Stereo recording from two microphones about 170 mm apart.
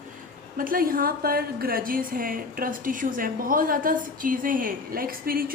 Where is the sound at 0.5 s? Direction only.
55° right (ahead or behind).